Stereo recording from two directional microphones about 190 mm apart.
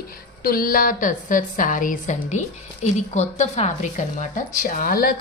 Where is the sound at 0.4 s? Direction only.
50° left (ahead or behind).